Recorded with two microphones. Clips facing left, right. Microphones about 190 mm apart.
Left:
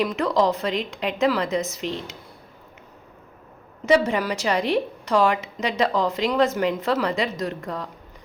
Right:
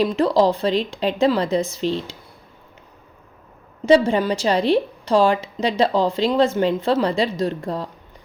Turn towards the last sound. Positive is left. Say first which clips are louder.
# right 5 dB
turn(degrees=-30)  # may be behind; listen again after turning